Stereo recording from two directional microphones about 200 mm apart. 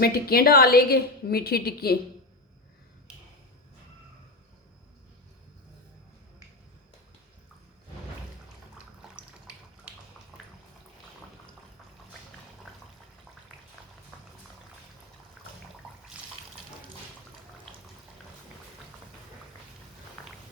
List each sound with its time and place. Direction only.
0.0 s a woman's voice: 50° left (ahead or behind)
10.3 s a sound: 5° right (ahead or behind)
16.1 s water: 5° right (ahead or behind)